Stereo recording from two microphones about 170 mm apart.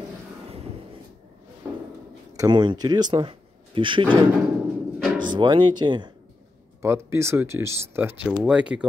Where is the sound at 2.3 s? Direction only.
25° right (ahead or behind).